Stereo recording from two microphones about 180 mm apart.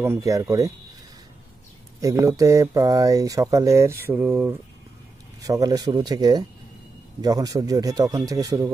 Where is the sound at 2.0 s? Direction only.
20° right (ahead or behind).